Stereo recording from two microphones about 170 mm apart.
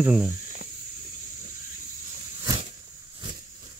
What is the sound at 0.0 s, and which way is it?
Speech, 5° right (ahead or behind).